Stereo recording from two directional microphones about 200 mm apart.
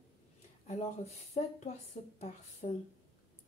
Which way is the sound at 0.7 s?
35° left (ahead or behind).